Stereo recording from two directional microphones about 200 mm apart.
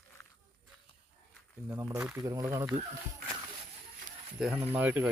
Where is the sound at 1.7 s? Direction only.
15° right (ahead or behind).